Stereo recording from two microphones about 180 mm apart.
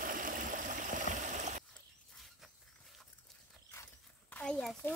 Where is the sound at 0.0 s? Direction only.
50° right (ahead or behind).